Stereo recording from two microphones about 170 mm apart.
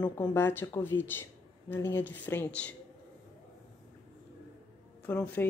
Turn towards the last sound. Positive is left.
turn(degrees=10)  # may be behind; listen again after turning